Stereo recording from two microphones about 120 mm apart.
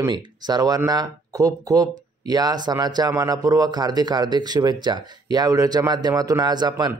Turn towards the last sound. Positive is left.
turn(degrees=-35)  # may be behind; listen again after turning